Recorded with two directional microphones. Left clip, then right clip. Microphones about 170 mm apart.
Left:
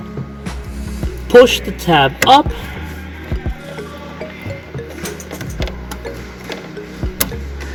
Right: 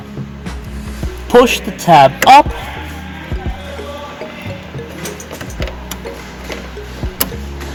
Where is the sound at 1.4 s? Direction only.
20° right (ahead or behind).